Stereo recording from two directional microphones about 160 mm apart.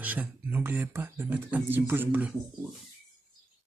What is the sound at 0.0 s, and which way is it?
Speech, 10° right (ahead or behind).